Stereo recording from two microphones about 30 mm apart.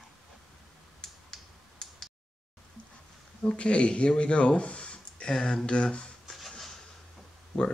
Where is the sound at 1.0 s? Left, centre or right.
Left.